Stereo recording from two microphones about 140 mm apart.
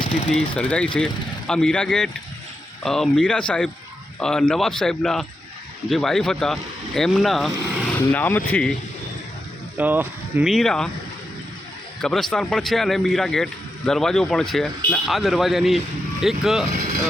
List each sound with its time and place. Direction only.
0.3 s a man's voice: 5° left (ahead or behind)
7.9 s speech: 15° left (ahead or behind)
9.7 s speech: 15° right (ahead or behind)
10.4 s a man's voice: centre (ahead or behind)
12.0 s a man's voice: 5° left (ahead or behind)
16.7 s speech: 70° right (ahead or behind)